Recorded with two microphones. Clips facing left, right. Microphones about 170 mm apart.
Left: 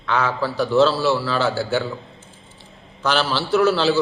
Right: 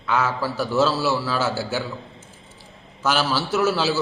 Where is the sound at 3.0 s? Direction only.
5° right (ahead or behind).